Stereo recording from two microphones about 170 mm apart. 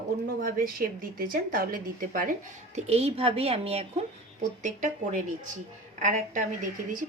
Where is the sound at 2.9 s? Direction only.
35° right (ahead or behind).